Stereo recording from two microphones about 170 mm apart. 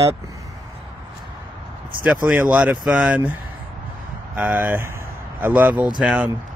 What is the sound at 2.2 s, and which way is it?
Speech, 5° right (ahead or behind).